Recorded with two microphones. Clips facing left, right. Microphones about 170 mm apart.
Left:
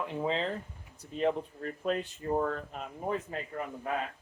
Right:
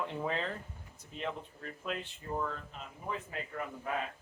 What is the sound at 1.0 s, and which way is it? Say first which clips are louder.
Speech: left 10 dB; 40° left (ahead or behind).